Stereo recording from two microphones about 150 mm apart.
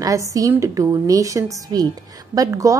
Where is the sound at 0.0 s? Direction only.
20° right (ahead or behind).